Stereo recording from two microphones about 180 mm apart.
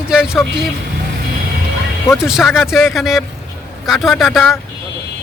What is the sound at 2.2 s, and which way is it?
A man's voice, centre (ahead or behind).